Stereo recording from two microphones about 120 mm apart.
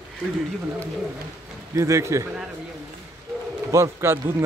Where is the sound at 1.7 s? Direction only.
25° right (ahead or behind).